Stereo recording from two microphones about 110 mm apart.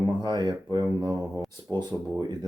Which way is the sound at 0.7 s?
35° right (ahead or behind).